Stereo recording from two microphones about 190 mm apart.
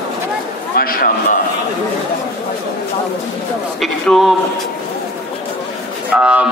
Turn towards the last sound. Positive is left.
turn(degrees=-5)  # may be behind; listen again after turning